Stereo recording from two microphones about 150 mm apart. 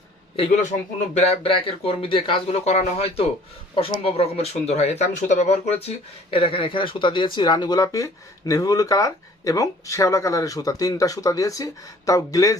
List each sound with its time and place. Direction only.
1.1 s speech: 40° left (ahead or behind)
6.3 s speech: 35° left (ahead or behind)